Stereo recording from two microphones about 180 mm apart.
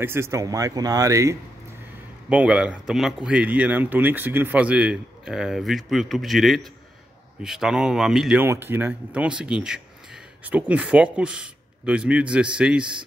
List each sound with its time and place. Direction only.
0.0 s speech: 15° right (ahead or behind)